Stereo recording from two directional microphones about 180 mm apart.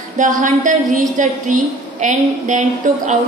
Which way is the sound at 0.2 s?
45° right (ahead or behind).